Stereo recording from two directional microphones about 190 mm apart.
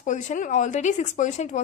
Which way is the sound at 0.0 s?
40° left (ahead or behind).